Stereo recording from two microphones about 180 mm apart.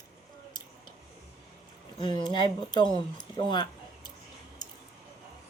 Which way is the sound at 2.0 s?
25° left (ahead or behind).